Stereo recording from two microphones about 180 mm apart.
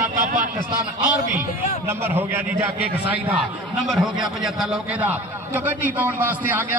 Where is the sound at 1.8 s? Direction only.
15° right (ahead or behind).